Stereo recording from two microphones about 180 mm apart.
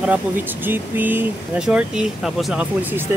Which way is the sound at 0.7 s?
10° right (ahead or behind).